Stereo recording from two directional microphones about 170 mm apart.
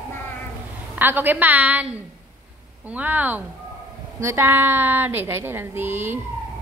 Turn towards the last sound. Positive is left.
turn(degrees=-10)  # may be behind; listen again after turning